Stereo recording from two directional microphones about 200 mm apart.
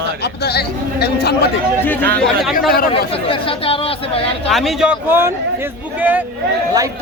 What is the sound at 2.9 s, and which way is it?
Speech, 25° left (ahead or behind).